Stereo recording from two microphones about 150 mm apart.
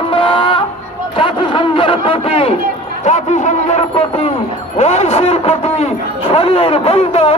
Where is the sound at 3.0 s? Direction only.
50° left (ahead or behind).